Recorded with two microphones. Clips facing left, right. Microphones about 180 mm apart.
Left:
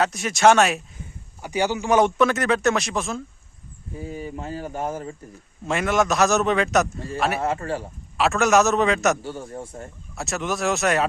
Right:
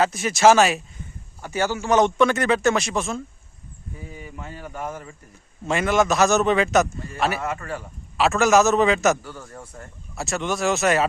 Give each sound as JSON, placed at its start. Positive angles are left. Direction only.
{"t": 0.0, "sound": "a man's voice", "side_deg": 0}
{"t": 1.4, "sound": "a man's voice", "side_deg": 15}
{"t": 4.0, "sound": "speech", "side_deg": 30}
{"t": 5.6, "sound": "a man's voice", "side_deg": 0}
{"t": 7.3, "sound": "a man's voice", "side_deg": 30}
{"t": 8.2, "sound": "a man's voice", "side_deg": 0}
{"t": 9.2, "sound": "a man's voice", "side_deg": 25}
{"t": 10.2, "sound": "a man's voice", "side_deg": 0}